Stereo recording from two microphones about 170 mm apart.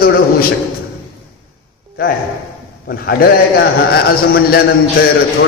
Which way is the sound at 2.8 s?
65° left (ahead or behind).